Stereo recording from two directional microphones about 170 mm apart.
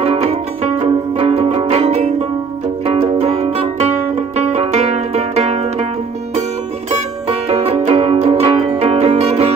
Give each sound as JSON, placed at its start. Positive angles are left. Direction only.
{"t": 0.0, "sound": "music", "side_deg": -35}
{"t": 6.9, "sound": "music", "side_deg": -35}